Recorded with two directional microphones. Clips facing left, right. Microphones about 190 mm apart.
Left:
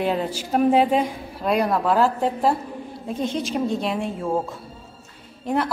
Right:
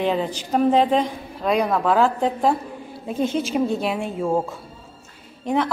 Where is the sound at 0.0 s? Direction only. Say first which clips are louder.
Right 1 dB; 5° left (ahead or behind).